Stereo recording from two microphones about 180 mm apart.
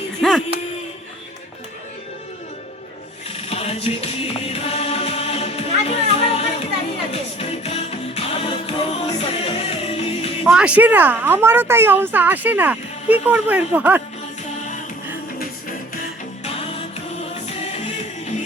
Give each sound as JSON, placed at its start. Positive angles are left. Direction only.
{"t": 0.2, "sound": "music", "side_deg": 0}
{"t": 3.3, "sound": "music", "side_deg": 35}
{"t": 10.4, "sound": "speech", "side_deg": -5}
{"t": 16.4, "sound": "music", "side_deg": 35}